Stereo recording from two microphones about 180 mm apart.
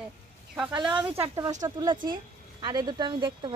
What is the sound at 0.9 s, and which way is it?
Speech, 10° right (ahead or behind).